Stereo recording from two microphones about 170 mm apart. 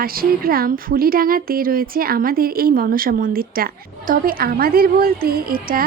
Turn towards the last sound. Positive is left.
turn(degrees=-60)  # may be behind; listen again after turning